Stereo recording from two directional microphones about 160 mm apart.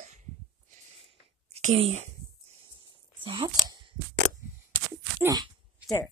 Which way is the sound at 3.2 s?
30° right (ahead or behind).